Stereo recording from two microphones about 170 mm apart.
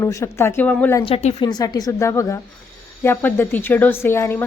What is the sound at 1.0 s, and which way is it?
Speech, 35° left (ahead or behind).